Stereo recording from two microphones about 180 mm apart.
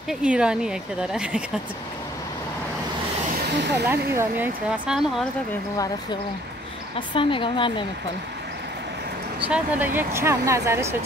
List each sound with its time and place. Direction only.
0.1 s speech: 5° right (ahead or behind)
3.4 s a sound: 70° right (ahead or behind)
3.7 s speech: 15° right (ahead or behind)
7.2 s speech: 30° left (ahead or behind)
9.4 s speech: 10° right (ahead or behind)